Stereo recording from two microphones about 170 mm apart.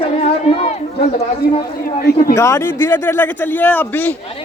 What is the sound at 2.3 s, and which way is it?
A man's voice, 15° left (ahead or behind).